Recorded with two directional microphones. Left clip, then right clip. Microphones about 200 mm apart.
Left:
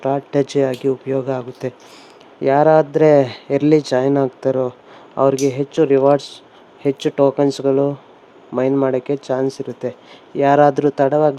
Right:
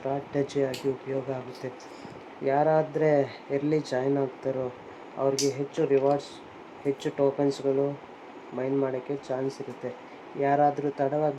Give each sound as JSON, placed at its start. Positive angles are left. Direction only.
{"t": 0.0, "sound": "speech", "side_deg": 50}